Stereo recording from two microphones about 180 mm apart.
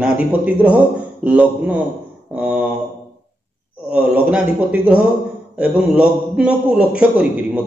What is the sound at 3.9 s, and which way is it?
A man's voice, 5° right (ahead or behind).